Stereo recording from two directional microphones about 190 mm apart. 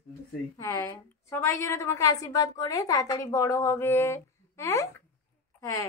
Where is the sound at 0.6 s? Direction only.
20° left (ahead or behind).